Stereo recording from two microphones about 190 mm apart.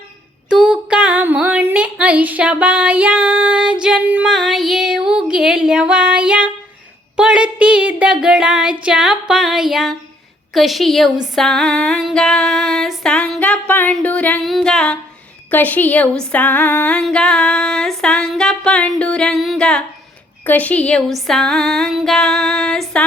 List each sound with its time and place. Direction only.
0.5 s a sound: 5° right (ahead or behind)
10.5 s female singing: centre (ahead or behind)
20.4 s a woman's voice: 10° left (ahead or behind)
21.2 s female singing: centre (ahead or behind)